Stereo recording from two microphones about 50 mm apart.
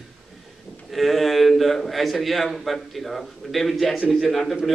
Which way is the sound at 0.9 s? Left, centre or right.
Centre.